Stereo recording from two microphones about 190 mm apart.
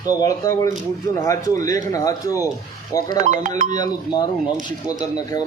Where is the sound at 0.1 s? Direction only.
20° left (ahead or behind).